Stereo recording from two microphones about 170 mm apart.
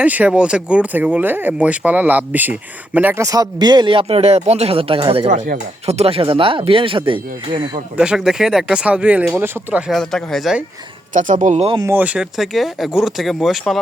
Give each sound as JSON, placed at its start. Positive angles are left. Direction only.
{"t": 0.0, "sound": "speech", "side_deg": -10}
{"t": 7.9, "sound": "speech", "side_deg": -5}
{"t": 11.1, "sound": "speech", "side_deg": -50}
{"t": 11.8, "sound": "speech", "side_deg": -10}